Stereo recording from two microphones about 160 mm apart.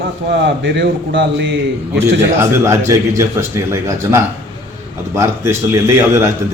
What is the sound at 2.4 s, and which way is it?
A man's voice, 15° right (ahead or behind).